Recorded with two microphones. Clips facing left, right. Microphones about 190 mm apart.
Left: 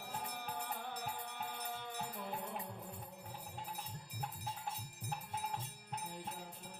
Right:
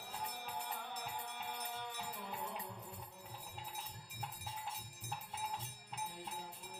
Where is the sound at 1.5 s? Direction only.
50° left (ahead or behind).